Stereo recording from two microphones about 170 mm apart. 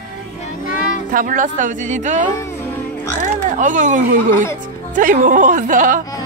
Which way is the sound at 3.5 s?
50° right (ahead or behind).